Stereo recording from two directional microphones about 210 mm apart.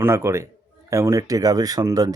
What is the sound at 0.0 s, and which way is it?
Speech, 10° right (ahead or behind).